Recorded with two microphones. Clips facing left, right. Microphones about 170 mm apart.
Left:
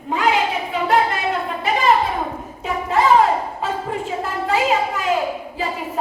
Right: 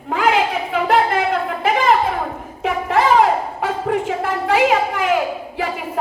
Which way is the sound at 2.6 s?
85° right.